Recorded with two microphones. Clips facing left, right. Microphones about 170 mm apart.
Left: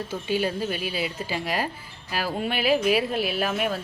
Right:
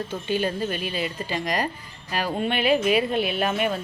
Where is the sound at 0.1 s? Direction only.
10° left (ahead or behind).